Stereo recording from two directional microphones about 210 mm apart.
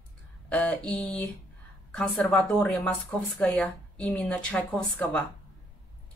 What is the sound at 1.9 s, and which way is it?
A woman's voice, 5° left (ahead or behind).